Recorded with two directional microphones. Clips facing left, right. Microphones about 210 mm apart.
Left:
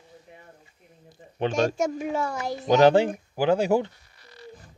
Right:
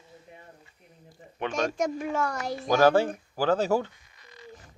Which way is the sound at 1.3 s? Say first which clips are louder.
Left 4 dB; 30° left (ahead or behind).